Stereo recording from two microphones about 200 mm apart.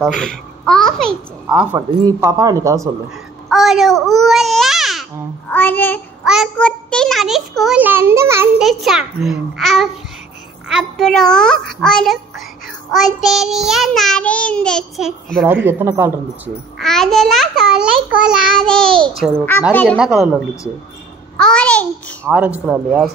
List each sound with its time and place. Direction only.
0.0 s child singing: 5° left (ahead or behind)
2.0 s speech: 15° right (ahead or behind)
3.4 s a child's voice: centre (ahead or behind)
5.5 s child singing: 10° left (ahead or behind)
6.2 s child singing: 5° right (ahead or behind)
8.6 s child singing: centre (ahead or behind)
15.4 s speech: 10° right (ahead or behind)
16.7 s child singing: centre (ahead or behind)
19.7 s child singing: 10° left (ahead or behind)
20.0 s child singing: centre (ahead or behind)
22.3 s speech: 5° right (ahead or behind)